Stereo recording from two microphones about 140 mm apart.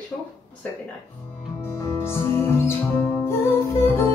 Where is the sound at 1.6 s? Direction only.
20° left (ahead or behind).